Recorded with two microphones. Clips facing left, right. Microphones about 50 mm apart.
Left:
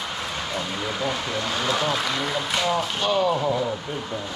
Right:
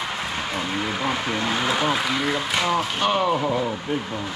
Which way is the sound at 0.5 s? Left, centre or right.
Right.